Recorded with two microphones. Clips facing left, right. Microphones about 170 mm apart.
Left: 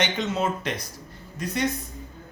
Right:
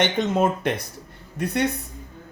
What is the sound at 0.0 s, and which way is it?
Speech, 55° right (ahead or behind).